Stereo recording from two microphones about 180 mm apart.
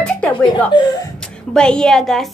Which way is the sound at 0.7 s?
25° left (ahead or behind).